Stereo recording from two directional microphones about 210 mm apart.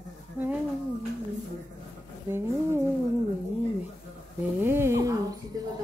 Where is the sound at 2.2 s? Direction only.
10° right (ahead or behind).